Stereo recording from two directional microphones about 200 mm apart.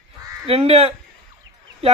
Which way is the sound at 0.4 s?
30° right (ahead or behind).